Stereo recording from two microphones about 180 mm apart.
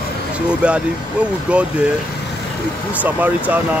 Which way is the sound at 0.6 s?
5° right (ahead or behind).